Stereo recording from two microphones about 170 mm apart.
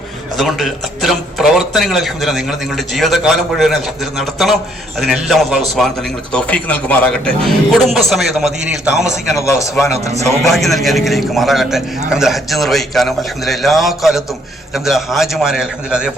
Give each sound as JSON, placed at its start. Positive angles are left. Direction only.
{"t": 0.3, "sound": "a man's voice", "side_deg": 0}
{"t": 9.9, "sound": "a man's voice", "side_deg": -40}
{"t": 10.4, "sound": "a man's voice", "side_deg": 0}